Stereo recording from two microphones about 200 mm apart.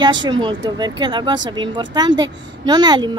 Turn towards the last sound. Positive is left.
turn(degrees=-20)  # may be behind; listen again after turning